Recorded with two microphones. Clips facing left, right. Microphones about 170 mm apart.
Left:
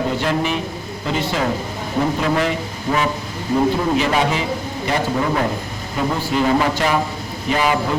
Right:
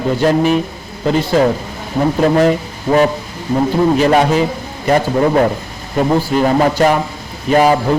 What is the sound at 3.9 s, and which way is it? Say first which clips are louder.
A man's voice: right 7 dB; 45° right (ahead or behind).